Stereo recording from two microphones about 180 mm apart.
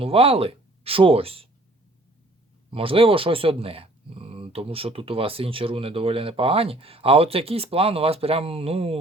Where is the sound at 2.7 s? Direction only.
30° right (ahead or behind).